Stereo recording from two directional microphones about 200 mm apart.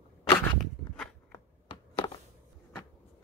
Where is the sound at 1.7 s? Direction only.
25° left (ahead or behind).